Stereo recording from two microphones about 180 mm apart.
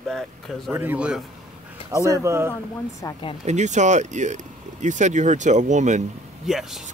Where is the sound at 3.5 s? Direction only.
40° right (ahead or behind).